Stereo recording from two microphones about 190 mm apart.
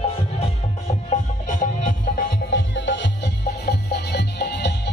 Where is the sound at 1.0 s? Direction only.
40° left (ahead or behind).